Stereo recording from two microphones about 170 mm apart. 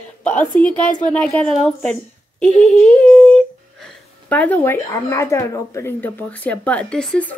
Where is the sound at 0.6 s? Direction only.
10° left (ahead or behind).